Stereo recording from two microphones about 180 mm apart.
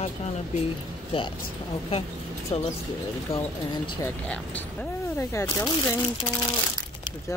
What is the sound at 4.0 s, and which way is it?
Speech, 10° left (ahead or behind).